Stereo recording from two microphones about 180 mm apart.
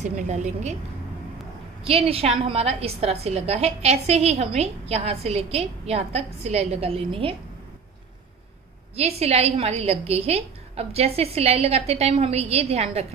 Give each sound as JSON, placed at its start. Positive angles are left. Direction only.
{"t": 0.0, "sound": "a woman's voice", "side_deg": -40}
{"t": 1.9, "sound": "a woman's voice", "side_deg": -35}
{"t": 8.9, "sound": "a woman's voice", "side_deg": -35}